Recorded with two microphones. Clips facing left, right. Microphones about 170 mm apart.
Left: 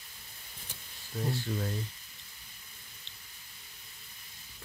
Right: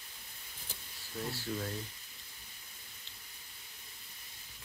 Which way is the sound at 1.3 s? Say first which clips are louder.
Left 3 dB; 5° right (ahead or behind).